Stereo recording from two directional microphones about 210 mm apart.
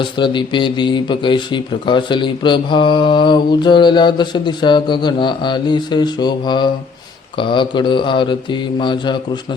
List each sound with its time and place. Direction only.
0.0 s a man's voice: 25° left (ahead or behind)